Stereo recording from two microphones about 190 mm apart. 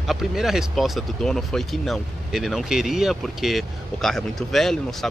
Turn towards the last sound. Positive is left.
turn(degrees=0)  # may be behind; listen again after turning